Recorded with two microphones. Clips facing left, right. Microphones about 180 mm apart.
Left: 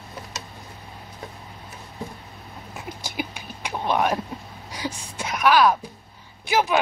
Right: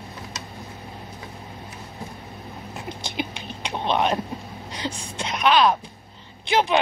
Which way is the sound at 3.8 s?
20° right (ahead or behind).